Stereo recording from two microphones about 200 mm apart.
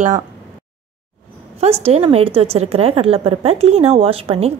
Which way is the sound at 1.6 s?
30° right (ahead or behind).